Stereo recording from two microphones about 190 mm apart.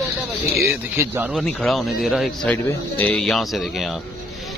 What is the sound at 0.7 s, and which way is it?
Speech, 10° right (ahead or behind).